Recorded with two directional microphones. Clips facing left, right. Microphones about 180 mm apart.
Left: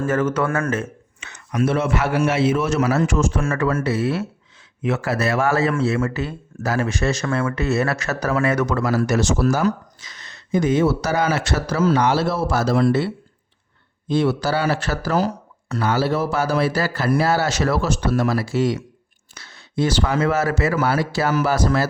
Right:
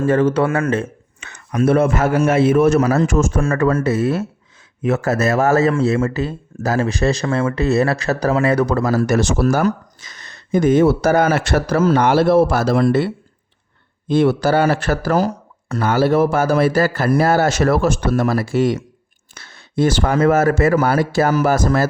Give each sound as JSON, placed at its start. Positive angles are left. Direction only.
{"t": 0.0, "sound": "a man's voice", "side_deg": -30}
{"t": 1.2, "sound": "speech", "side_deg": -55}
{"t": 14.1, "sound": "speech", "side_deg": -55}